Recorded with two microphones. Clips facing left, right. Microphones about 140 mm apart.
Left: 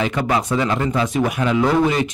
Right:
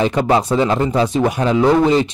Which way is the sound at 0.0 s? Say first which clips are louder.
Right 5 dB; 30° right (ahead or behind).